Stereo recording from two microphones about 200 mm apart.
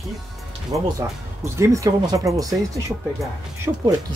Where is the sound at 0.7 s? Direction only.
15° right (ahead or behind).